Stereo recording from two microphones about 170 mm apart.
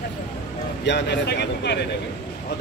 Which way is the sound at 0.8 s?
90° left.